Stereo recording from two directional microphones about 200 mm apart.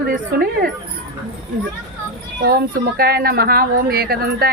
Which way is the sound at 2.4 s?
50° right (ahead or behind).